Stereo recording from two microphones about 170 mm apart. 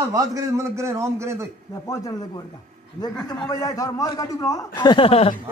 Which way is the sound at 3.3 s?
20° left (ahead or behind).